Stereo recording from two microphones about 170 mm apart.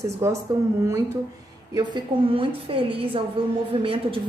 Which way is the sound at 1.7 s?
25° right (ahead or behind).